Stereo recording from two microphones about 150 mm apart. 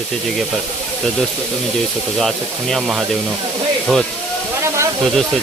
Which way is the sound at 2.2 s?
Centre (ahead or behind).